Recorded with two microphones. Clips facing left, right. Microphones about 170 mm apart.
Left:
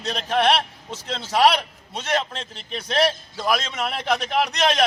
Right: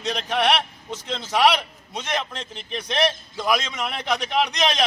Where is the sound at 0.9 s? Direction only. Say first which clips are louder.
Even; 30° left (ahead or behind).